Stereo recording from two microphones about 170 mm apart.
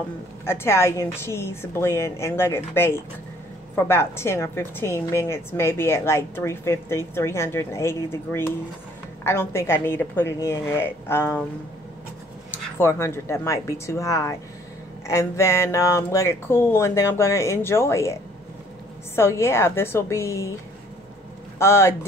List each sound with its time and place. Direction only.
0.5 s a woman's voice: 15° left (ahead or behind)
12.7 s a woman's voice: 15° left (ahead or behind)
19.1 s a woman's voice: 15° left (ahead or behind)
21.5 s a woman's voice: 15° left (ahead or behind)